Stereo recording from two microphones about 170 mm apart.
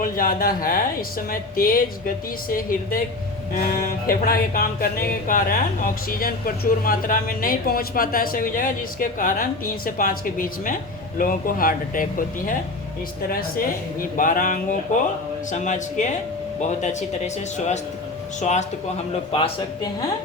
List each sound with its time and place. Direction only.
0.0 s music: 55° left (ahead or behind)
11.2 s speech: 55° left (ahead or behind)
19.3 s speech: 30° left (ahead or behind)